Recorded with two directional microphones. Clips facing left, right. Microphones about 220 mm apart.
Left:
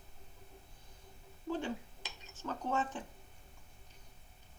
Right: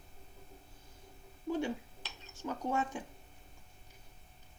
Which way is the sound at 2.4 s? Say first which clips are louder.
Right 1 dB; 10° right (ahead or behind).